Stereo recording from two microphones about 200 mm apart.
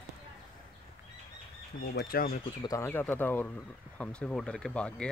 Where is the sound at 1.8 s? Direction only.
50° left (ahead or behind).